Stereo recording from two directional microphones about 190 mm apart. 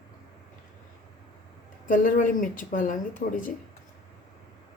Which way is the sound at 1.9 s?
45° left (ahead or behind).